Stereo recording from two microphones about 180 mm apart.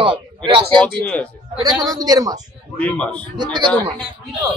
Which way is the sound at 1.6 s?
20° right (ahead or behind).